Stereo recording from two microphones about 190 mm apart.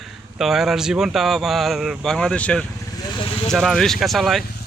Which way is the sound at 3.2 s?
30° left (ahead or behind).